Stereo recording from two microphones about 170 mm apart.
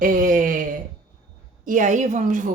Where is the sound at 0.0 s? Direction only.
55° right (ahead or behind).